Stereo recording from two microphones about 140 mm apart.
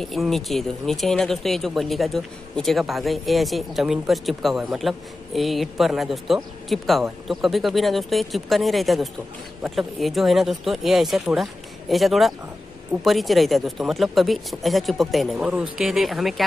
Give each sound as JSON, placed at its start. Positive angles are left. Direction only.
{"t": 0.0, "sound": "speech", "side_deg": 0}